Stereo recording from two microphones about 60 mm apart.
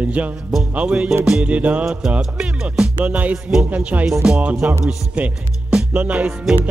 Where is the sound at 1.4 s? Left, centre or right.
Right.